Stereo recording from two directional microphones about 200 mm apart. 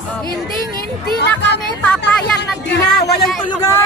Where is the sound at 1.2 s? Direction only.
60° left (ahead or behind).